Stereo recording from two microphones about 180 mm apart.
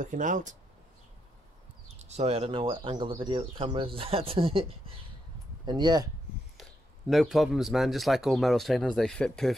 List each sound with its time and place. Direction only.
0.0 s speech: 45° right (ahead or behind)
2.0 s speech: 35° right (ahead or behind)
6.5 s speech: centre (ahead or behind)